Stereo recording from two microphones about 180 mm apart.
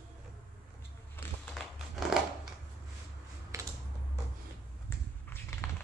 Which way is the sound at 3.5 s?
15° right (ahead or behind).